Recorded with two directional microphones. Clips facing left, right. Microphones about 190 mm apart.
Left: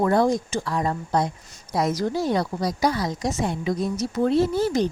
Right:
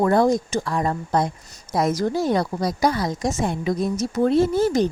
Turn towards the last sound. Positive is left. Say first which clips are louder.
# right 3 dB
turn(degrees=-45)  # may be behind; listen again after turning